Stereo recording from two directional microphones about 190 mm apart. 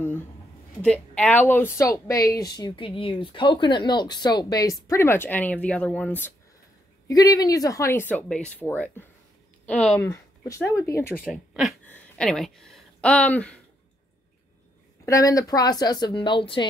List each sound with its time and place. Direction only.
0.8 s speech: 5° left (ahead or behind)
15.0 s speech: 15° left (ahead or behind)